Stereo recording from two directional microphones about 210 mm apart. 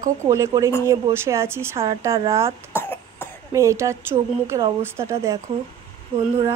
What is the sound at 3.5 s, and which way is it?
Speech, 15° right (ahead or behind).